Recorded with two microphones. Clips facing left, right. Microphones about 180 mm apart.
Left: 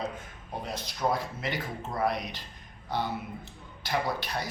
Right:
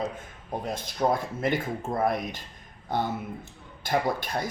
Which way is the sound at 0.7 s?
50° right (ahead or behind).